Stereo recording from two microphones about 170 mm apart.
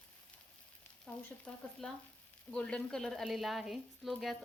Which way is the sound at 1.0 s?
5° left (ahead or behind).